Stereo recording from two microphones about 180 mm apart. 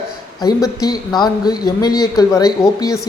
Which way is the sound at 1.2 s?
20° left (ahead or behind).